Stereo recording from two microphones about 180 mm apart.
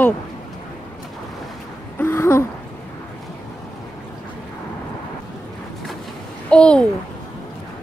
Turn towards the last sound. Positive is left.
turn(degrees=5)  # may be behind; listen again after turning